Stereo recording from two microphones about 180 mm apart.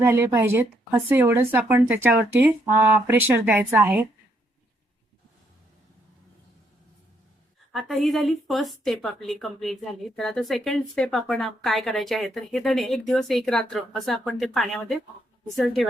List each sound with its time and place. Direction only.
0.0 s speech: 10° right (ahead or behind)
7.7 s a woman's voice: centre (ahead or behind)